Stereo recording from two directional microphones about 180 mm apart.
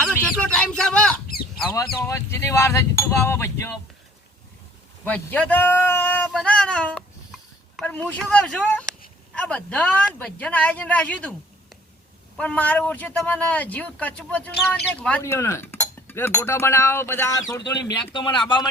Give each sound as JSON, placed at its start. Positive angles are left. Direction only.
{"t": 0.0, "sound": "bird", "side_deg": 5}
{"t": 1.7, "sound": "speech", "side_deg": 20}
{"t": 5.0, "sound": "speech", "side_deg": 10}
{"t": 17.8, "sound": "speech", "side_deg": 25}